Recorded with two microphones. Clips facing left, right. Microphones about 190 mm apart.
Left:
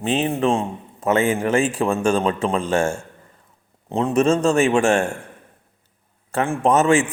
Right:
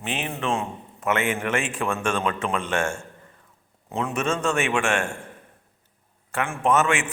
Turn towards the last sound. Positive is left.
turn(degrees=35)  # may be behind; listen again after turning